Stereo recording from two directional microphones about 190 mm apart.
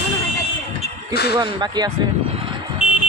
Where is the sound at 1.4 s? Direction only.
20° right (ahead or behind).